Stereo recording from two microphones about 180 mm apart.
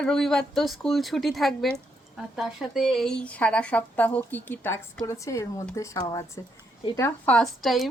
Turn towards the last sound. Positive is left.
turn(degrees=0)  # may be behind; listen again after turning